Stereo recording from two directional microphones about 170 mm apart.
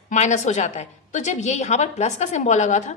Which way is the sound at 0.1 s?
45° left (ahead or behind).